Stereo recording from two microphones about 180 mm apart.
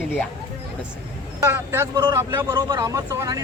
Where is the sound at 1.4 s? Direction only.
15° right (ahead or behind).